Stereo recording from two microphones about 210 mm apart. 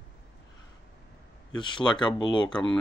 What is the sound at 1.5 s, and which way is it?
Speech, 20° left (ahead or behind).